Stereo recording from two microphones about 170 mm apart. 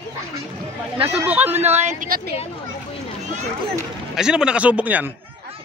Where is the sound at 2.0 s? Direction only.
60° right (ahead or behind).